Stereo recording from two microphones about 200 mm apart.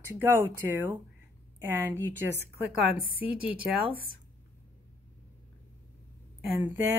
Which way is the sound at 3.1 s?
25° left (ahead or behind).